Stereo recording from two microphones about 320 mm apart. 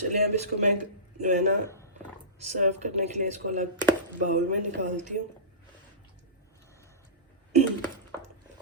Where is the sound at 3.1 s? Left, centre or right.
Right.